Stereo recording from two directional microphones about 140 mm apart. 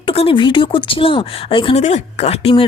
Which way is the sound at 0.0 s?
40° left (ahead or behind).